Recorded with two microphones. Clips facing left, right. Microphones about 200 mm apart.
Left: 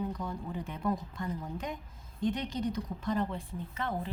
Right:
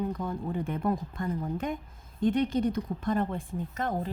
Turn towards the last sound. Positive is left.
turn(degrees=-45)  # may be behind; listen again after turning